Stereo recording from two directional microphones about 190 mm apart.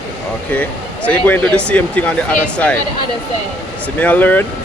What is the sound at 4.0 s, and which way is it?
Speech, 10° left (ahead or behind).